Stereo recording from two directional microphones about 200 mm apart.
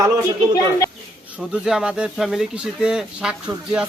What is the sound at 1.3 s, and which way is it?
Speech, 5° right (ahead or behind).